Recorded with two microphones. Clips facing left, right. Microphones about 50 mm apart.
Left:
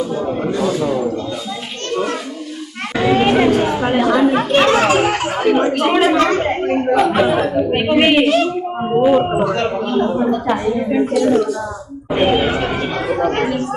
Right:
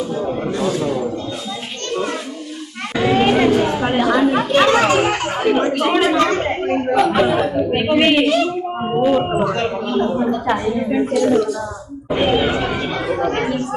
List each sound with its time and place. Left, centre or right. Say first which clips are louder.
0.1 s a sound: left 2 dB; centre
0.6 s speech: left 2 dB; centre
2.9 s a sound: left 1 dB; centre
4.2 s chatter: left 2 dB; centre
4.6 s a woman's voice: even; centre
9.2 s a woman's voice: left 2 dB; centre
10.4 s a woman's voice: left 1 dB; centre
10.8 s speech: left 1 dB; centre
13.1 s chatter: left 3 dB; centre